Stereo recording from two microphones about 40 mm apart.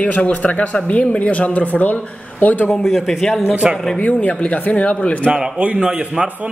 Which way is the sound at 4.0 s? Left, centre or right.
Left.